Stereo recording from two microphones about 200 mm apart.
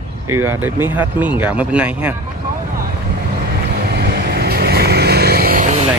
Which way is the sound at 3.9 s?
55° right (ahead or behind).